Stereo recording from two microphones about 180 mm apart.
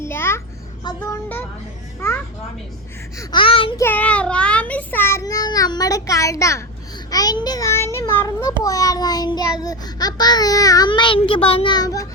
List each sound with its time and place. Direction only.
0.0 s a sound: 15° left (ahead or behind)
0.9 s a child's voice: 15° left (ahead or behind)
3.2 s child singing: 30° left (ahead or behind)
3.8 s a child's voice: 10° left (ahead or behind)
8.6 s child singing: 20° left (ahead or behind)